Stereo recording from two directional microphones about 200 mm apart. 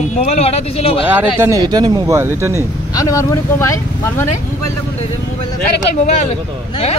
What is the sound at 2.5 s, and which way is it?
Speech, 15° left (ahead or behind).